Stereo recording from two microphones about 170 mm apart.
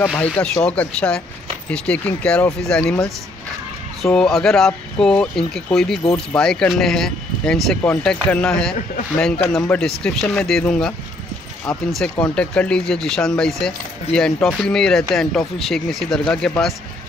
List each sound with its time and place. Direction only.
0.0 s speech: 5° left (ahead or behind)